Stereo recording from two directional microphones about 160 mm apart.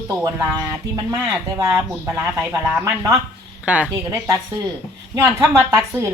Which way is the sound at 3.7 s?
10° right (ahead or behind).